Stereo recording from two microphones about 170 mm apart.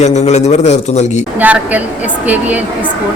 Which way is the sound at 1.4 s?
10° right (ahead or behind).